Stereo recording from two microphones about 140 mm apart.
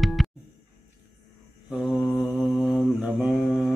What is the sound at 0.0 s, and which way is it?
Music, centre (ahead or behind).